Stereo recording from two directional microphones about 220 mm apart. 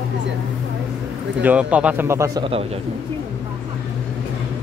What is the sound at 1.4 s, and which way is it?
A man's voice, 5° right (ahead or behind).